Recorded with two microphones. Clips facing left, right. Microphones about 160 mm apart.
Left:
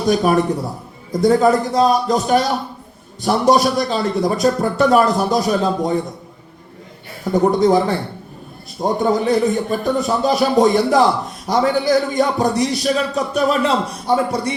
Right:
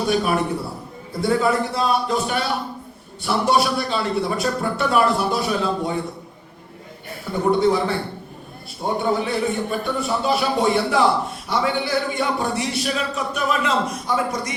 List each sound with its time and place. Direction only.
0.1 s a man's voice: 40° left (ahead or behind)
7.3 s a man's voice: 40° left (ahead or behind)